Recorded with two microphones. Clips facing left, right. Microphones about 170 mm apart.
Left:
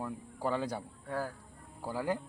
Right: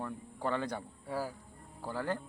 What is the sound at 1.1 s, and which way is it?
Speech, 5° right (ahead or behind).